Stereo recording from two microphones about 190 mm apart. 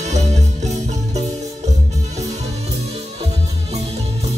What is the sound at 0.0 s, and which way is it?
Music, 35° right (ahead or behind).